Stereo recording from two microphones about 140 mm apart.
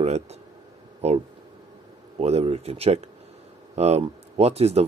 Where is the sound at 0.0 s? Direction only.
50° right (ahead or behind).